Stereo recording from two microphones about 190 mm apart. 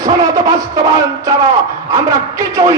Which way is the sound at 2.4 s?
15° right (ahead or behind).